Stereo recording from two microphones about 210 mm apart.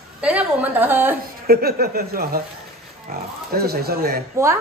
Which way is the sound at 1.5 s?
45° right (ahead or behind).